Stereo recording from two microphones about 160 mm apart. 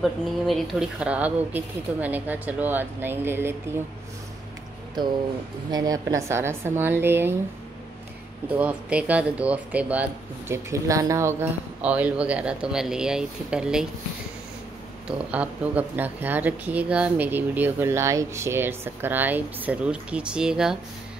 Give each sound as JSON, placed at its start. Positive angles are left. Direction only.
{"t": 0.0, "sound": "speech", "side_deg": 0}
{"t": 5.7, "sound": "speech", "side_deg": -25}
{"t": 8.5, "sound": "speech", "side_deg": -10}
{"t": 15.0, "sound": "speech", "side_deg": -10}